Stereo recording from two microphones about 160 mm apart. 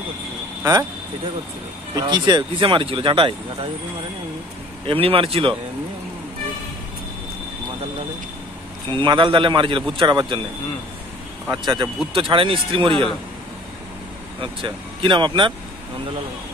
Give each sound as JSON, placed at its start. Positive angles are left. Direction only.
{"t": 2.0, "sound": "speech", "side_deg": -25}
{"t": 4.8, "sound": "speech", "side_deg": -35}
{"t": 8.8, "sound": "speech", "side_deg": -30}
{"t": 11.5, "sound": "speech", "side_deg": -30}
{"t": 14.4, "sound": "speech", "side_deg": -30}